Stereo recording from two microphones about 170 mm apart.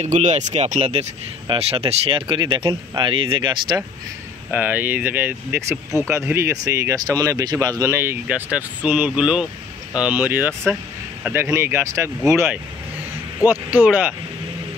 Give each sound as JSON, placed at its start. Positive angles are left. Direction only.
{"t": 0.0, "sound": "speech", "side_deg": -45}
{"t": 4.5, "sound": "speech", "side_deg": -10}
{"t": 13.5, "sound": "speech", "side_deg": -10}